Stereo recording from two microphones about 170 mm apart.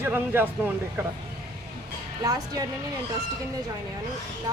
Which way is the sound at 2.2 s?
20° right (ahead or behind).